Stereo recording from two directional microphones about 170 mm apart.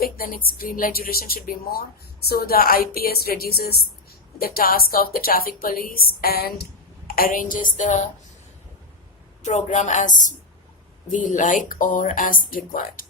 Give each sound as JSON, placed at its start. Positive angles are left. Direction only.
{"t": 0.0, "sound": "speech", "side_deg": 55}
{"t": 7.1, "sound": "speech", "side_deg": 55}
{"t": 9.4, "sound": "speech", "side_deg": 45}